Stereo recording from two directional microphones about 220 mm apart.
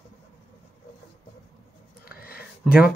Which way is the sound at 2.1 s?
45° left (ahead or behind).